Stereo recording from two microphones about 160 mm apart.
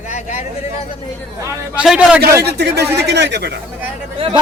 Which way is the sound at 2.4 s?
90° right.